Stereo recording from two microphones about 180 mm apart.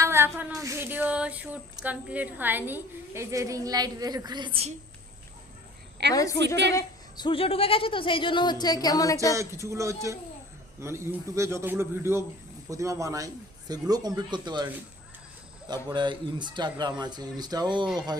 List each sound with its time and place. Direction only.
0.0 s a sound: 15° right (ahead or behind)
0.6 s a man's voice: 15° right (ahead or behind)
6.1 s a woman's voice: 15° left (ahead or behind)
9.3 s a man's voice: 15° right (ahead or behind)
15.7 s a woman's voice: 25° right (ahead or behind)